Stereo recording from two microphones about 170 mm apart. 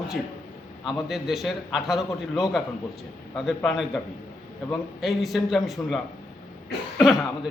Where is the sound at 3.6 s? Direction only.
Centre (ahead or behind).